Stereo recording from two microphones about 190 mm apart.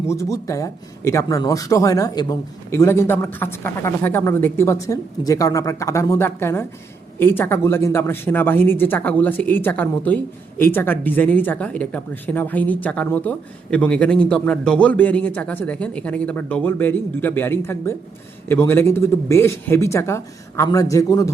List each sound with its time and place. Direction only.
0.1 s speech: 15° left (ahead or behind)